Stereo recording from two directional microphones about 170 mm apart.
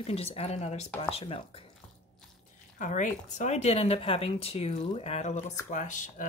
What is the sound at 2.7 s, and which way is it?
Speech, 45° left (ahead or behind).